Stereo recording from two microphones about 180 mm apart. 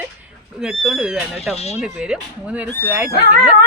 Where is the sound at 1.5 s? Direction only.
35° left (ahead or behind).